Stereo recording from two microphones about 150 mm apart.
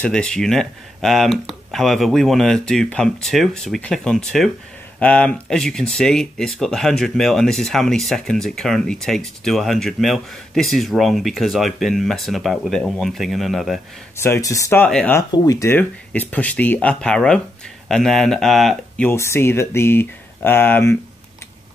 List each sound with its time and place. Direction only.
0.0 s speech: 5° left (ahead or behind)
14.1 s speech: 15° left (ahead or behind)
14.9 s speech: 5° left (ahead or behind)
15.3 s speech: 25° left (ahead or behind); by 19.0 s centre (ahead or behind)
19.0 s speech: 15° left (ahead or behind)